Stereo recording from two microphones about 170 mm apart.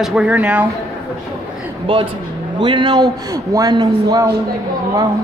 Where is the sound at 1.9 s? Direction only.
30° right (ahead or behind).